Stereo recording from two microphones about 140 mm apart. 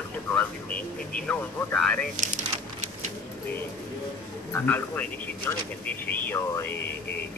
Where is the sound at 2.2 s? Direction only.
60° right (ahead or behind).